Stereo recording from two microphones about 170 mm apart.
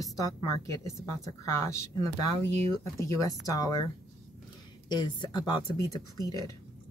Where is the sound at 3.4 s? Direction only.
20° left (ahead or behind).